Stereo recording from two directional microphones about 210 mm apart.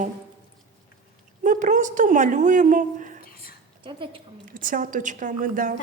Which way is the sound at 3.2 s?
45° left (ahead or behind).